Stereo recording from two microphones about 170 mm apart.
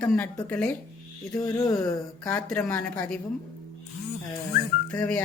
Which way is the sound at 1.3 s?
20° left (ahead or behind).